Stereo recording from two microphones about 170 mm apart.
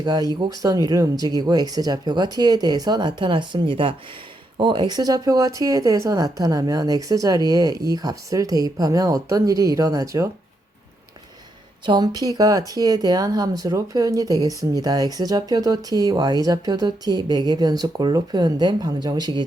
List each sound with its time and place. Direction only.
0.0 s speech: 20° right (ahead or behind)
11.9 s speech: 25° right (ahead or behind)